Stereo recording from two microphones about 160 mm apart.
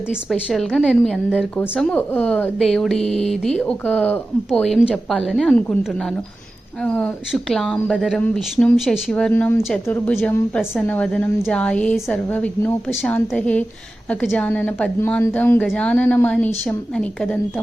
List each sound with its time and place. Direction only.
0.3 s speech: centre (ahead or behind)
6.8 s a woman's voice: 5° left (ahead or behind)